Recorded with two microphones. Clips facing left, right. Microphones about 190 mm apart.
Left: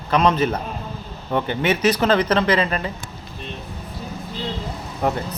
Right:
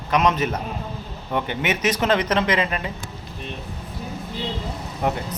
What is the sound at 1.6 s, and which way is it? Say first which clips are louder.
Speech: left 4 dB; 20° right (ahead or behind).